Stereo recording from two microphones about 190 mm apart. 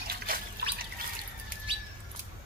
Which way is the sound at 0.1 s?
50° right (ahead or behind).